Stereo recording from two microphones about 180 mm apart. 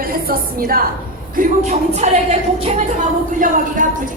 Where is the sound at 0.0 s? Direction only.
55° right (ahead or behind).